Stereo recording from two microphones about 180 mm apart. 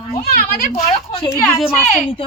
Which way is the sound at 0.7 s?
35° left (ahead or behind).